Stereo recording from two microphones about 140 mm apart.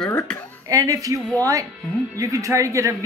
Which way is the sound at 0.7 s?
25° right (ahead or behind).